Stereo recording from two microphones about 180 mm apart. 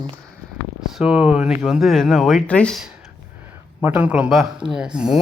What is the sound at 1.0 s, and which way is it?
Speech, 5° right (ahead or behind).